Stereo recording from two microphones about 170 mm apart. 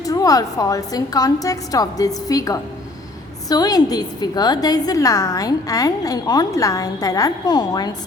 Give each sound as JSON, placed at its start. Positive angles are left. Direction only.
{"t": 0.0, "sound": "a woman's voice", "side_deg": 20}